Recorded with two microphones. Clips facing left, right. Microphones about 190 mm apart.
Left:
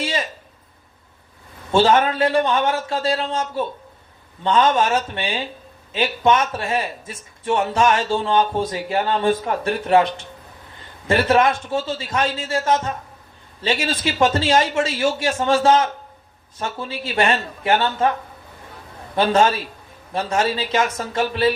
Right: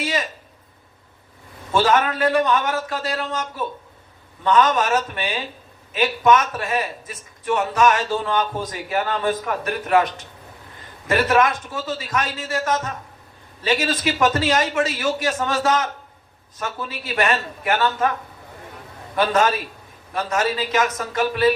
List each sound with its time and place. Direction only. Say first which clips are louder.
0.0 s a sound: even; 30° left (ahead or behind)
1.7 s a man's voice: left 3 dB; 30° left (ahead or behind)
4.4 s a man's voice: left 1 dB; 30° left (ahead or behind)
11.1 s a man's voice: left 2 dB; 30° left (ahead or behind)
19.1 s a man's voice: left 2 dB; 30° left (ahead or behind)